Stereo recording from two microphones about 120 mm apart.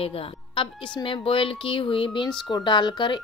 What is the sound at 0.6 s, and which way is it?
Speech, 45° left (ahead or behind).